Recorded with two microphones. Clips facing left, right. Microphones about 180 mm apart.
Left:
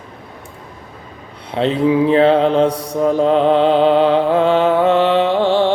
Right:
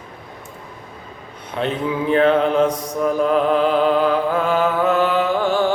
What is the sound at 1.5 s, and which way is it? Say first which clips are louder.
Mantra: left 7 dB; 30° left (ahead or behind).